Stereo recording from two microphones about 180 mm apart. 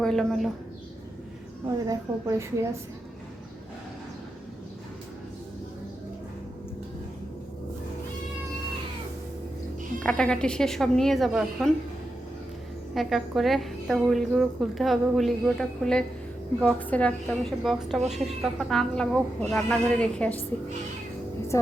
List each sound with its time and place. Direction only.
0.0 s a woman's voice: 5° left (ahead or behind)
1.6 s a woman's voice: 20° right (ahead or behind)
10.0 s a woman's voice: 5° left (ahead or behind)
12.9 s a woman's voice: centre (ahead or behind)
21.5 s speech: 15° left (ahead or behind)